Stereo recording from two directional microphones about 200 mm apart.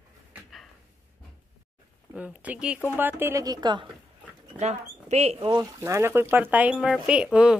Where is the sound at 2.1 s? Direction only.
5° right (ahead or behind); by 3.8 s 20° right (ahead or behind).